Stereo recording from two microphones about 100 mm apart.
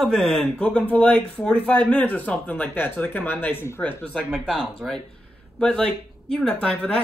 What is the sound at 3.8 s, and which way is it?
Speech, 5° left (ahead or behind).